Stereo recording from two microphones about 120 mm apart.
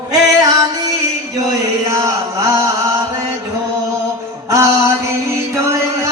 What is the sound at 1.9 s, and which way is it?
Chant, 25° right (ahead or behind).